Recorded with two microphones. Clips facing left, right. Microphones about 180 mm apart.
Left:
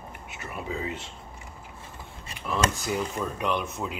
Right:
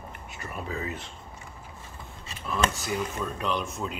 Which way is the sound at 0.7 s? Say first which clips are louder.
Left 2 dB; 25° left (ahead or behind).